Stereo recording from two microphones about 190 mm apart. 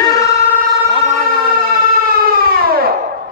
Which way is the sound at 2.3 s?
50° right (ahead or behind).